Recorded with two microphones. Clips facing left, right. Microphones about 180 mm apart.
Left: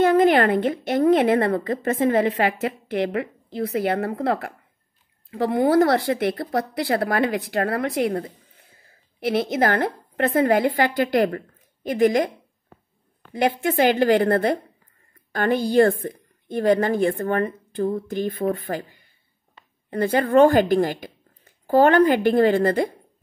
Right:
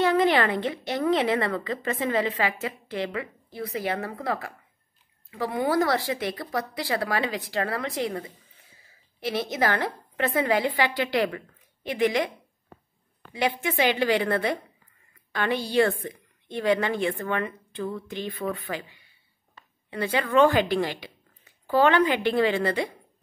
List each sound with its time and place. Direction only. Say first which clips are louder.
0.0 s a woman's voice: left 5 dB; 50° left (ahead or behind)
13.3 s a woman's voice: left 5 dB; 50° left (ahead or behind)